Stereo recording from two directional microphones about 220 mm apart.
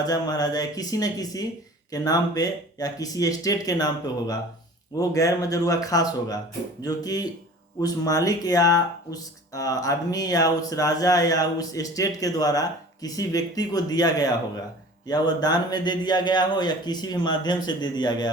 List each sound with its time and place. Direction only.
0.0 s speech: 15° left (ahead or behind)
4.9 s speech: 15° left (ahead or behind)